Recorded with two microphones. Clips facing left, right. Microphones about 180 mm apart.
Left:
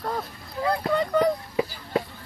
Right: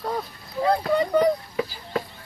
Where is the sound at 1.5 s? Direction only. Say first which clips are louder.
Left 2 dB; 25° left (ahead or behind).